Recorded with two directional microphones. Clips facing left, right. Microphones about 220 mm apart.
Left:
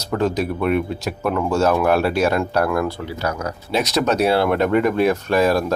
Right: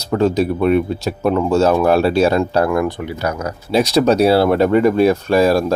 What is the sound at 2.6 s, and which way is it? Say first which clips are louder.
Speech: right 4 dB; 20° right (ahead or behind).